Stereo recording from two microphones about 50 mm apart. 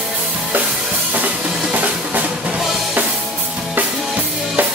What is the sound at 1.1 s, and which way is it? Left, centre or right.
Drum, right.